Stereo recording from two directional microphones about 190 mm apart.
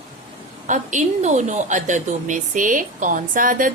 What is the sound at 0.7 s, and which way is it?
A woman's voice, 40° right (ahead or behind).